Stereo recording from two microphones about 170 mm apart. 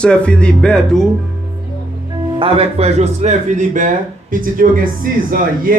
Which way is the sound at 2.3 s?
35° right (ahead or behind).